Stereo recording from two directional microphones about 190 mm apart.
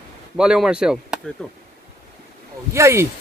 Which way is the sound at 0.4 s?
5° right (ahead or behind).